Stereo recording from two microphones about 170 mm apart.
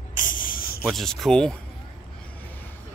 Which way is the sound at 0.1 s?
50° left (ahead or behind).